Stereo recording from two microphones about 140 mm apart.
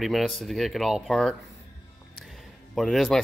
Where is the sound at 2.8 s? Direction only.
Centre (ahead or behind).